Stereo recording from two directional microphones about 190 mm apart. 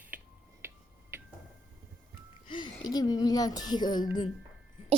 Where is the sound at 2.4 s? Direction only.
25° left (ahead or behind).